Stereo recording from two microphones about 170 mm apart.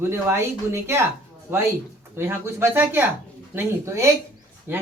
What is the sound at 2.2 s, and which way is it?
Speech, 15° right (ahead or behind).